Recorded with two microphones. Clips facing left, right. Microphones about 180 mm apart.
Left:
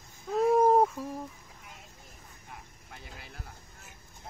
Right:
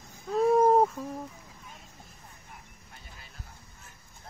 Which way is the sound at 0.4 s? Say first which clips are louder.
Right 1 dB; centre (ahead or behind).